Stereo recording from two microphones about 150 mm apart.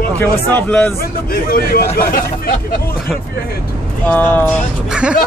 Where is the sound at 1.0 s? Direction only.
90° left.